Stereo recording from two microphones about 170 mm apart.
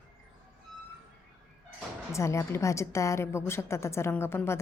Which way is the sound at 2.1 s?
15° left (ahead or behind).